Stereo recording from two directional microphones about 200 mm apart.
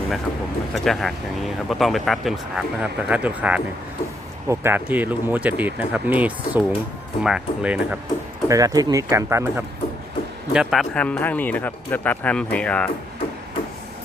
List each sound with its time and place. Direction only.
0.7 s speech: centre (ahead or behind)
8.4 s speech: 15° right (ahead or behind)
10.5 s speech: centre (ahead or behind)